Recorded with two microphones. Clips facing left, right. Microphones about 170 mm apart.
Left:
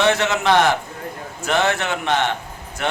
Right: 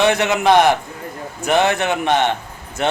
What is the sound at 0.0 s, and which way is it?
A man's voice, 15° right (ahead or behind).